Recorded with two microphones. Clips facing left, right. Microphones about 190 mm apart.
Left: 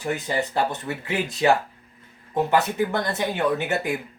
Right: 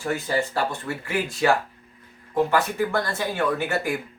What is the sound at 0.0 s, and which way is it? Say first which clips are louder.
Speech: right 1 dB; 20° left (ahead or behind).